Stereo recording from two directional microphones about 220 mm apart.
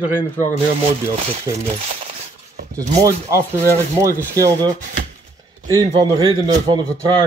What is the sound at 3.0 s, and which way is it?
Speech, 15° right (ahead or behind).